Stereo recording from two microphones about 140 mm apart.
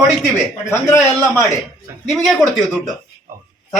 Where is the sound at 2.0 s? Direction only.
Centre (ahead or behind).